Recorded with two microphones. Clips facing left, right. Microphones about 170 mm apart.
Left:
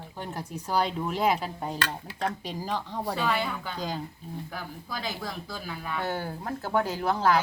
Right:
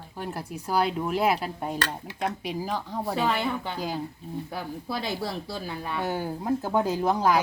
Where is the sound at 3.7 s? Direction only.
10° right (ahead or behind).